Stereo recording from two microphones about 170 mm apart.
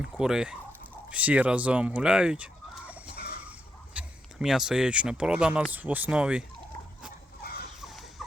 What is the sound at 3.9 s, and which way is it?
Speech, centre (ahead or behind).